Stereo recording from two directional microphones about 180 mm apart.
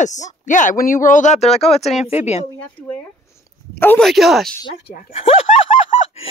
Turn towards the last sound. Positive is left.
turn(degrees=30)  # may be behind; listen again after turning